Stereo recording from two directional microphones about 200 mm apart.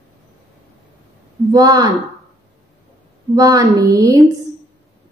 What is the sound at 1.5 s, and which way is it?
Speech, 20° right (ahead or behind).